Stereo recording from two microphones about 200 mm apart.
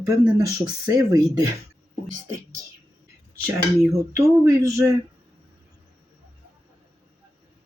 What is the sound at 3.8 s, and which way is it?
Speech, 15° right (ahead or behind).